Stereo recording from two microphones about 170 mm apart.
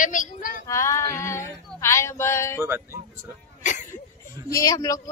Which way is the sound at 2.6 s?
15° right (ahead or behind).